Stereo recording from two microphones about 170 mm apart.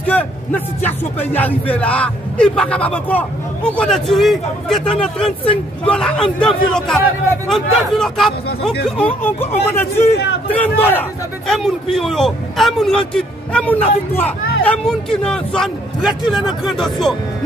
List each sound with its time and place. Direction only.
0.0 s a man's voice: 10° left (ahead or behind)
9.0 s a man's voice: 10° left (ahead or behind)